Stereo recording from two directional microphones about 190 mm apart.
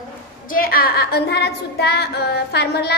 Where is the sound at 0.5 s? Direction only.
50° left (ahead or behind).